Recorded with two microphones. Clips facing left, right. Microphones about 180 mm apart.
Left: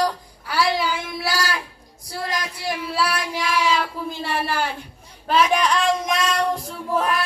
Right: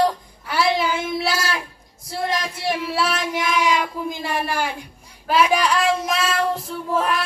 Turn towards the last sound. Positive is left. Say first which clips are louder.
# right 1 dB
turn(degrees=0)  # may be behind; listen again after turning